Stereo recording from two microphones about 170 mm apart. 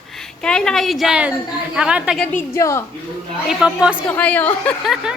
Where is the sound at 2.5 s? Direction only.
15° left (ahead or behind).